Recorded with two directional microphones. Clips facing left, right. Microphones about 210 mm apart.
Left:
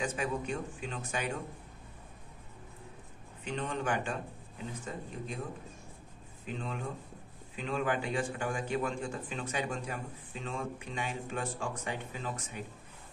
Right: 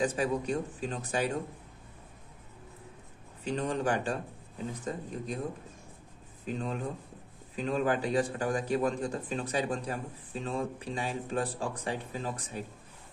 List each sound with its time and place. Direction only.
0.0 s a man's voice: 35° right (ahead or behind)
3.4 s a man's voice: 35° right (ahead or behind)
6.4 s a man's voice: 40° right (ahead or behind)